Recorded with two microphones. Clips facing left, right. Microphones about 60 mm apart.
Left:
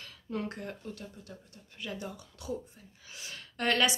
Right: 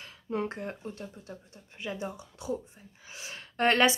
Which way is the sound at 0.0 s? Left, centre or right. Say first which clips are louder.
Right 4 dB; right.